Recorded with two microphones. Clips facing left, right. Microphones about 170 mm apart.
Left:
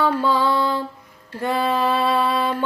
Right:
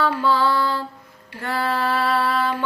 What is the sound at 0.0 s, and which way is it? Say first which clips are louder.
Mantra: left 1 dB; 15° left (ahead or behind).